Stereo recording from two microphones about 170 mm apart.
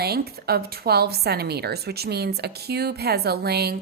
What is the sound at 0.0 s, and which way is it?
A woman's voice, 70° right (ahead or behind).